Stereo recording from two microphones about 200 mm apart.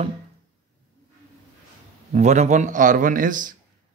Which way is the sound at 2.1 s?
35° right (ahead or behind).